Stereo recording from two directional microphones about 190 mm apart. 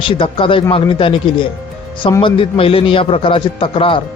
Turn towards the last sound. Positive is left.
turn(degrees=30)  # may be behind; listen again after turning